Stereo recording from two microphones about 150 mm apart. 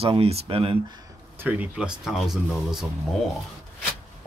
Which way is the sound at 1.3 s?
10° right (ahead or behind).